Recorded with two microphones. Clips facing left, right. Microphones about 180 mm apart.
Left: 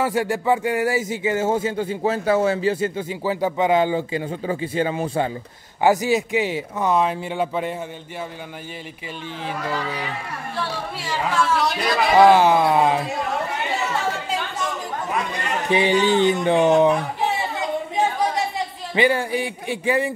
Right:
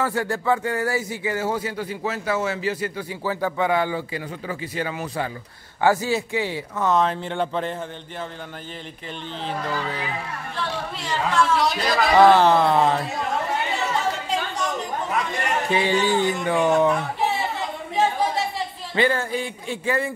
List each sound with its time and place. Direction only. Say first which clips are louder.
0.0 s speech: left 3 dB; 15° left (ahead or behind)
5.8 s speech: left 3 dB; 15° left (ahead or behind)
10.6 s speech: even; 10° left (ahead or behind)
15.7 s speech: left 4 dB; 20° left (ahead or behind)
18.9 s speech: left 2 dB; 15° left (ahead or behind)